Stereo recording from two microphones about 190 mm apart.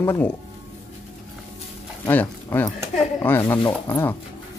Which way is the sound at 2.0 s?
10° left (ahead or behind).